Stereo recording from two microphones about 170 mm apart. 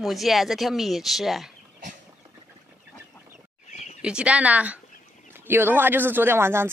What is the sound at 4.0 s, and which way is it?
Speech, 5° right (ahead or behind).